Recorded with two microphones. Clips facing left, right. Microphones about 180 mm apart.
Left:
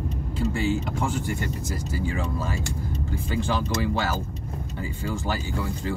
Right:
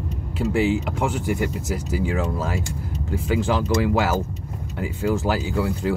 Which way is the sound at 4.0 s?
85° right.